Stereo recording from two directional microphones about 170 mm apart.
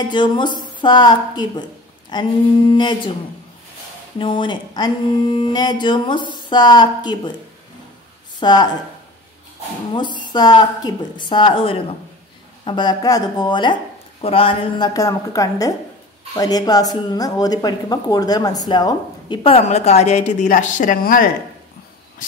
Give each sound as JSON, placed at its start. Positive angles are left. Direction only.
{"t": 0.1, "sound": "speech", "side_deg": 25}
{"t": 4.2, "sound": "speech", "side_deg": 30}
{"t": 8.4, "sound": "speech", "side_deg": 25}
{"t": 9.9, "sound": "speech", "side_deg": 25}
{"t": 15.0, "sound": "speech", "side_deg": 20}